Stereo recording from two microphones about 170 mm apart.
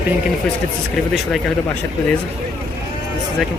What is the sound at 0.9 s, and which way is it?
Speech, centre (ahead or behind).